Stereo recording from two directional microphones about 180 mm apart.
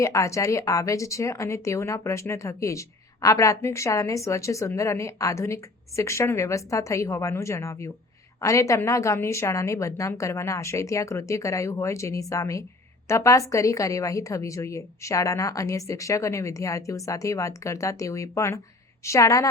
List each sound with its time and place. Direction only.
0.0 s a woman's voice: 15° left (ahead or behind)